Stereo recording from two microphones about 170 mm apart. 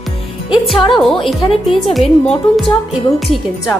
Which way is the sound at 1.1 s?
30° left (ahead or behind).